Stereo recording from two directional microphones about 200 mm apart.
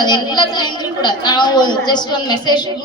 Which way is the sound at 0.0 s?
20° left (ahead or behind).